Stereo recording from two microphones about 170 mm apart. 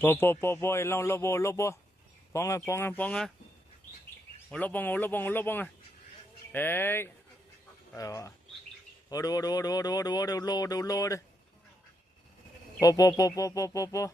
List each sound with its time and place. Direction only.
0.0 s speech: 10° left (ahead or behind)
4.5 s speech: 10° left (ahead or behind)
12.8 s speech: 20° left (ahead or behind)